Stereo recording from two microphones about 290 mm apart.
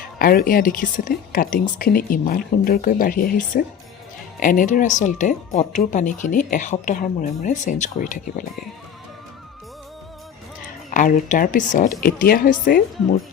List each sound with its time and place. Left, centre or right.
0.2 s a woman's voice: left
10.9 s a woman's voice: left